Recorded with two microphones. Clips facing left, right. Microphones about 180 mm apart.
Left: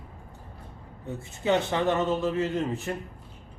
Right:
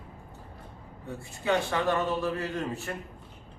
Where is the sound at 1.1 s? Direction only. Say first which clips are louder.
Left 3 dB; 20° left (ahead or behind).